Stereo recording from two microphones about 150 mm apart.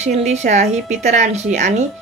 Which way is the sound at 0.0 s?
50° right (ahead or behind).